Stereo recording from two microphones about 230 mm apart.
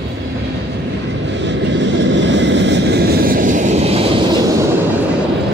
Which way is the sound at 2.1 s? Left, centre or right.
Right.